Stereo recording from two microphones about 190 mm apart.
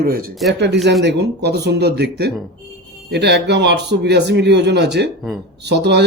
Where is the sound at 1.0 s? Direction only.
60° right (ahead or behind).